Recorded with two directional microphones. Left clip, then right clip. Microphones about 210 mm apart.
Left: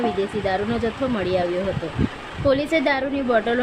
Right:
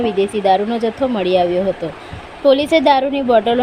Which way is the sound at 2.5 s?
15° right (ahead or behind).